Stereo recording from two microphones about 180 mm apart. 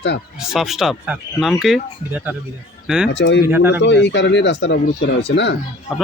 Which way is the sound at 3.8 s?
80° left.